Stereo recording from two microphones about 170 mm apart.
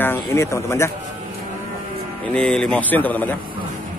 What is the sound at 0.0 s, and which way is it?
Speech, 15° left (ahead or behind).